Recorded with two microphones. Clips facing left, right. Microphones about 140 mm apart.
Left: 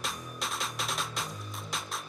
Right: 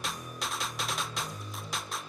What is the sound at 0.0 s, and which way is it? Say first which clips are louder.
Music: even; centre (ahead or behind).